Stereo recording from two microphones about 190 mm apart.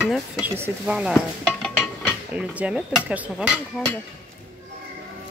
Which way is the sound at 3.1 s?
10° right (ahead or behind).